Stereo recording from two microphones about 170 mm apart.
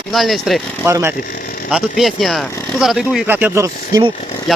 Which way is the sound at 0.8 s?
15° right (ahead or behind).